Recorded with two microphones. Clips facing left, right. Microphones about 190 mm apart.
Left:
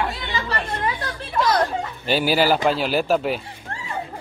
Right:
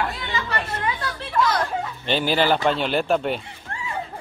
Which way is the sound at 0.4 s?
35° left (ahead or behind).